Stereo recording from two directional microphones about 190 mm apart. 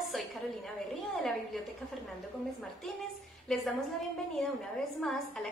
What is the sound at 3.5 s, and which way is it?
A woman's voice, centre (ahead or behind).